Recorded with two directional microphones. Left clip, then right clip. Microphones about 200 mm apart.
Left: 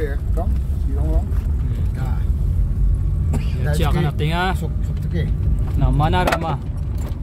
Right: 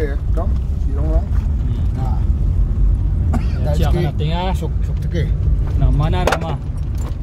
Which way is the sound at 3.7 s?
55° left (ahead or behind).